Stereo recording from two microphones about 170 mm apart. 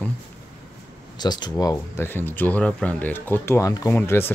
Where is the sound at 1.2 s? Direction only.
25° left (ahead or behind).